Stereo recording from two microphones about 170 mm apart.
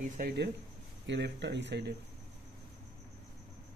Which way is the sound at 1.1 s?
90° right.